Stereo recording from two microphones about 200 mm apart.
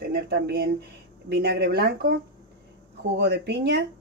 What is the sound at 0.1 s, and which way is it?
Speech, 50° right (ahead or behind).